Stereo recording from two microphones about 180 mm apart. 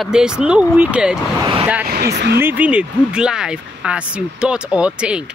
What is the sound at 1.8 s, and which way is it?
Speech, 65° right (ahead or behind).